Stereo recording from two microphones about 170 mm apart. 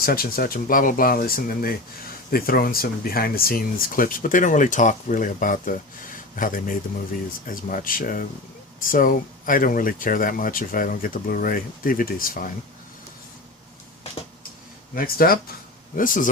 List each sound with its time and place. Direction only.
0.0 s speech: 60° left (ahead or behind)
14.9 s speech: 60° left (ahead or behind)